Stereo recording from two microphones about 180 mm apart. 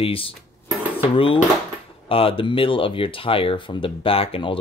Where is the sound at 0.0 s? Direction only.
30° left (ahead or behind).